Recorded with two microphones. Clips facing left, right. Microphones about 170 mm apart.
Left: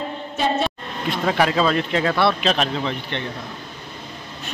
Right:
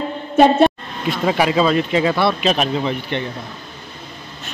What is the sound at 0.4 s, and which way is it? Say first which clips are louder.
Speech: right 10 dB; 60° right (ahead or behind).